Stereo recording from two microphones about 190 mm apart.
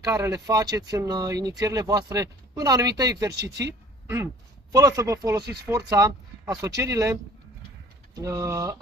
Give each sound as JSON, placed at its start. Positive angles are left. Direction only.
{"t": 0.0, "sound": "speech", "side_deg": -15}
{"t": 4.7, "sound": "speech", "side_deg": -20}